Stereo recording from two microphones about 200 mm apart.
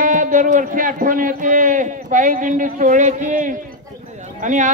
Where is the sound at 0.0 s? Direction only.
40° right (ahead or behind).